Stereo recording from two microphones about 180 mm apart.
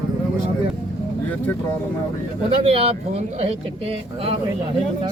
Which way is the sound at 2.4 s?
30° right (ahead or behind).